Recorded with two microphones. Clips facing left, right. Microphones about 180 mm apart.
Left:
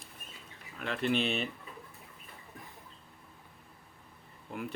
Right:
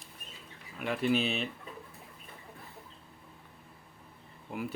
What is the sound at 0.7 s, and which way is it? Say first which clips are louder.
Speech: right 2 dB; 10° right (ahead or behind).